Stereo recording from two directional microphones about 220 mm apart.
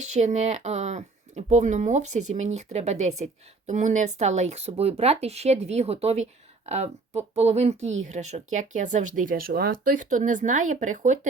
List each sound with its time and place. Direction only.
0.0 s speech: 30° right (ahead or behind)